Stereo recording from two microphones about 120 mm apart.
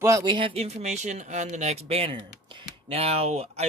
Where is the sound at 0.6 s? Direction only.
75° right (ahead or behind).